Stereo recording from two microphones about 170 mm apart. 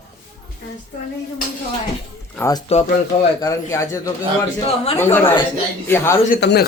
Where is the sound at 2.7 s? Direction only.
35° left (ahead or behind).